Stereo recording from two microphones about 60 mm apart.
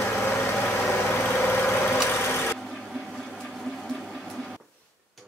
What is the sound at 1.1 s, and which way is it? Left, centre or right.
Vehicle, left.